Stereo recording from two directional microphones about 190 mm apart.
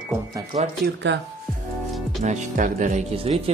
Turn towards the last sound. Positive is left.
turn(degrees=-40)  # may be behind; listen again after turning